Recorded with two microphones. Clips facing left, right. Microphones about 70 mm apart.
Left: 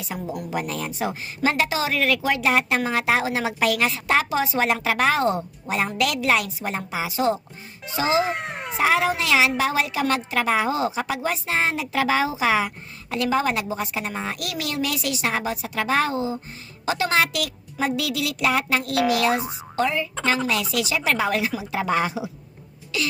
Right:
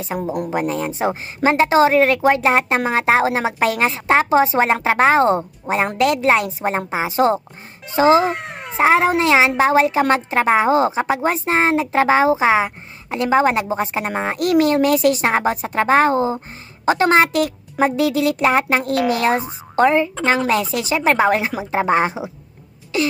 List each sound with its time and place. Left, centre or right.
0.1 s a woman's voice: right
8.2 s speech: centre
8.8 s a woman's voice: right